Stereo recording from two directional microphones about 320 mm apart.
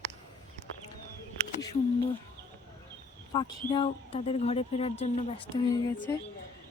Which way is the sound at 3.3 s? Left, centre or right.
Centre.